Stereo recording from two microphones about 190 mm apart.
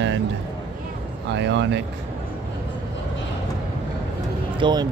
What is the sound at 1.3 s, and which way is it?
Speech, 70° right (ahead or behind).